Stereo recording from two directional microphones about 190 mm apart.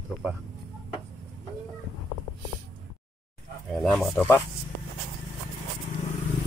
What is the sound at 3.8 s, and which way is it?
Speech, centre (ahead or behind).